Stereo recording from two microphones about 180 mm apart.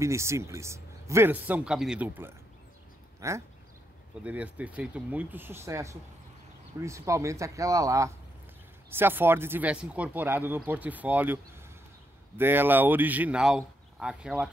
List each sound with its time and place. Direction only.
0.0 s speech: 15° right (ahead or behind)
12.4 s speech: 10° right (ahead or behind)